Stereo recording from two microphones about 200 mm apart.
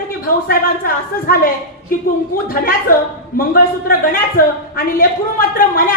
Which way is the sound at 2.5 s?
45° left (ahead or behind).